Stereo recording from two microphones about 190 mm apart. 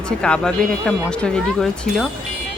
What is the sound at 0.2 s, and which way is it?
Speech, 5° left (ahead or behind).